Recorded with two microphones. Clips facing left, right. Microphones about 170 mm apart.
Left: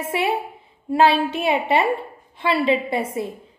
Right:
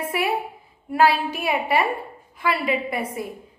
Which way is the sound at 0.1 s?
25° left (ahead or behind).